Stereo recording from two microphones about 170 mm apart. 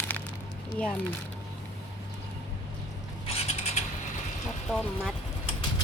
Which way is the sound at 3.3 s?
40° left (ahead or behind).